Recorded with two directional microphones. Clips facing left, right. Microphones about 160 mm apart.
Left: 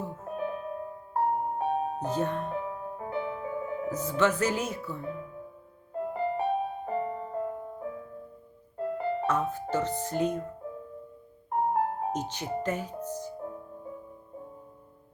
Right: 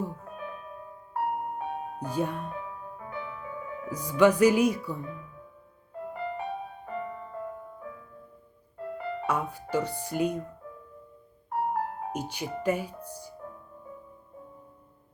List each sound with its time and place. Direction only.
0.3 s music: 35° left (ahead or behind)
2.0 s speech: 10° right (ahead or behind)
2.5 s music: 30° left (ahead or behind)
4.2 s speech: 15° right (ahead or behind)
5.0 s music: 30° left (ahead or behind)
9.2 s speech: 10° right (ahead or behind)
11.5 s music: 25° left (ahead or behind)
12.1 s speech: 10° right (ahead or behind)
13.1 s music: 10° right (ahead or behind)